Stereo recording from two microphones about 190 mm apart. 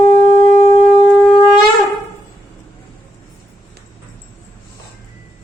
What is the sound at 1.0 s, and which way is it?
Shofar, 5° left (ahead or behind).